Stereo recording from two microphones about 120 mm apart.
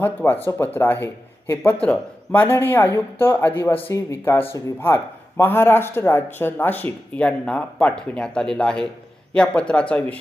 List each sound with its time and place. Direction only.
0.0 s speech: 15° left (ahead or behind)